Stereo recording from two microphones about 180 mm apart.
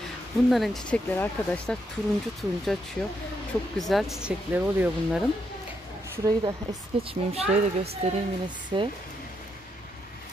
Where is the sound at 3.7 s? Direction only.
Centre (ahead or behind).